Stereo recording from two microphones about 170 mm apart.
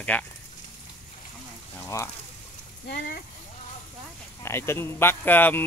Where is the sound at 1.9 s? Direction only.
15° left (ahead or behind).